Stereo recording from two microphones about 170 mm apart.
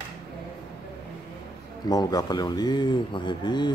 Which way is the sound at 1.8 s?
25° left (ahead or behind).